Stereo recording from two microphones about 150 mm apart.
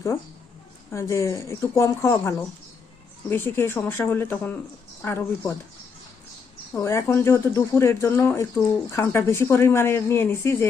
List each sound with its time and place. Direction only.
0.9 s speech: 20° left (ahead or behind)
6.7 s speech: 15° left (ahead or behind)